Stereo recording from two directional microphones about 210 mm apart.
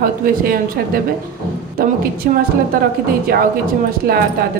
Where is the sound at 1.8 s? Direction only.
45° right (ahead or behind).